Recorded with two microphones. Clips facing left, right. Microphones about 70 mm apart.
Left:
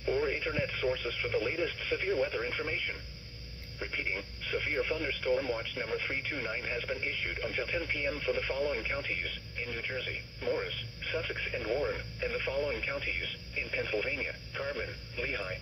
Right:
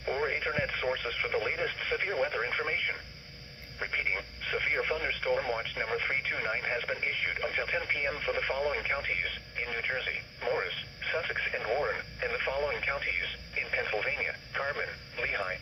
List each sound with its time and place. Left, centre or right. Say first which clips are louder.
0.0 s speech: even; right